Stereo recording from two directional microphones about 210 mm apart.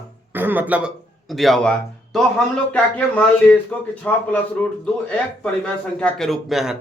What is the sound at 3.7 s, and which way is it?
Speech, 10° left (ahead or behind).